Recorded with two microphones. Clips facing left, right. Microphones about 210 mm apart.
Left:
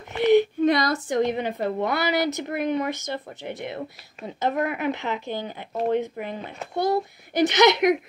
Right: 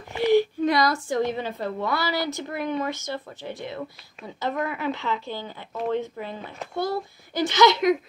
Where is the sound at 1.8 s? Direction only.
20° left (ahead or behind).